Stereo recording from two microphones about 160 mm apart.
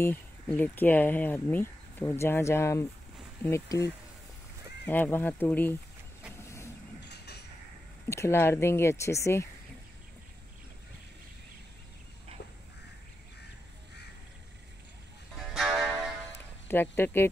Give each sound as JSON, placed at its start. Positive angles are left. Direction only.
{"t": 0.0, "sound": "speech", "side_deg": 15}
{"t": 7.1, "sound": "a sound", "side_deg": 90}
{"t": 8.1, "sound": "speech", "side_deg": 15}
{"t": 15.3, "sound": "music", "side_deg": 0}
{"t": 16.6, "sound": "speech", "side_deg": 10}